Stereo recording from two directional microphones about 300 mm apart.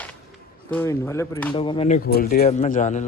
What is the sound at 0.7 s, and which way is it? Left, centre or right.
A man's voice, centre.